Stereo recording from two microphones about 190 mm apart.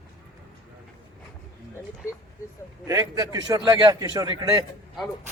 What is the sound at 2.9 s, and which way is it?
A man's voice, 20° right (ahead or behind).